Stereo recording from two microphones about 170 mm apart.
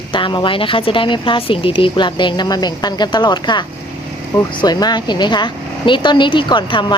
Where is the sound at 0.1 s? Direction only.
30° left (ahead or behind).